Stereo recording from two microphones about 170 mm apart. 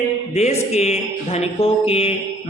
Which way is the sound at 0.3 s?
40° left (ahead or behind).